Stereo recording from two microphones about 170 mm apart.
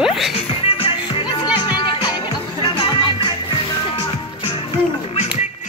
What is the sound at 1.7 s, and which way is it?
Music, 30° left (ahead or behind).